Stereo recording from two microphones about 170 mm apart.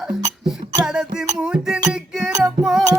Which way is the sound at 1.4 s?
5° right (ahead or behind).